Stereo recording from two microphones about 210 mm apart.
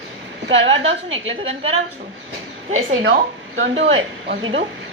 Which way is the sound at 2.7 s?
70° right (ahead or behind).